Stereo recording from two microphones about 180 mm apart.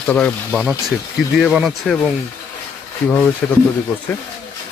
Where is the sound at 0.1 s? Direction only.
5° left (ahead or behind).